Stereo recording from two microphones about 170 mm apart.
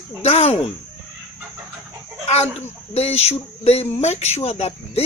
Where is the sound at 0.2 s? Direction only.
40° left (ahead or behind).